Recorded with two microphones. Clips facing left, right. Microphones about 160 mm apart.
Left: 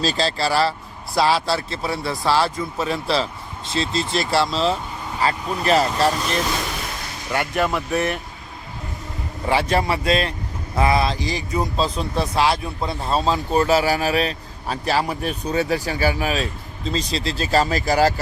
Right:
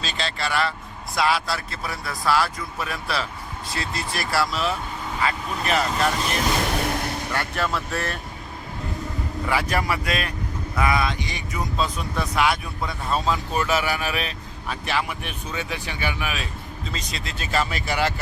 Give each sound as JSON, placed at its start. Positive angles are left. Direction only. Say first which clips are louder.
{"t": 0.0, "sound": "a man's voice", "louder": "left 7 dB", "side_deg": 35}
{"t": 7.3, "sound": "speech", "louder": "left 7 dB", "side_deg": 15}
{"t": 9.5, "sound": "a man's voice", "louder": "left 5 dB", "side_deg": 30}